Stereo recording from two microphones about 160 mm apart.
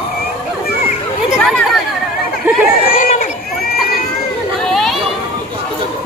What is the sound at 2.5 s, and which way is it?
Chatter, 15° right (ahead or behind).